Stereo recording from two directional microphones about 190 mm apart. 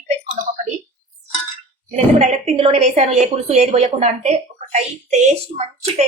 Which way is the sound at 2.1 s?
35° right (ahead or behind).